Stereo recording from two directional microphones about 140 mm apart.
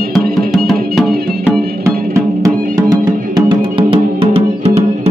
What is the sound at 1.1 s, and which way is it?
Music, 90° right.